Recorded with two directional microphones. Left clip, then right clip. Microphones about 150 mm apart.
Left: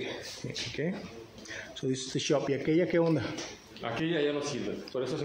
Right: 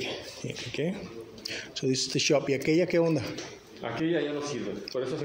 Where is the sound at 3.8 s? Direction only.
20° left (ahead or behind).